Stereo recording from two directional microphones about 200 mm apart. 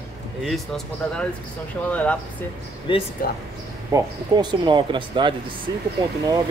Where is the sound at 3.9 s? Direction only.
20° right (ahead or behind).